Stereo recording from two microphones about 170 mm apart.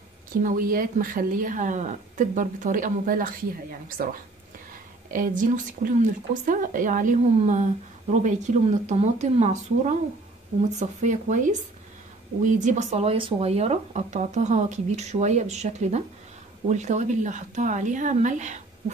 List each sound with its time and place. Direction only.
0.4 s speech: 55° right (ahead or behind)